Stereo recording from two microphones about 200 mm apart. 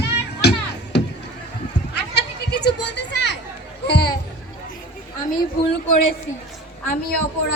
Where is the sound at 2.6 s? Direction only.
60° left (ahead or behind).